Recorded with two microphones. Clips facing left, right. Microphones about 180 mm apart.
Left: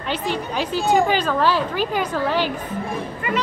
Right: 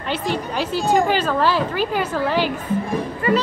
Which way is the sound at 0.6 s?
10° right (ahead or behind).